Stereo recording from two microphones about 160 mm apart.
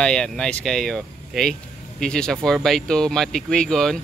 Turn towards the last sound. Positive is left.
turn(degrees=5)  # may be behind; listen again after turning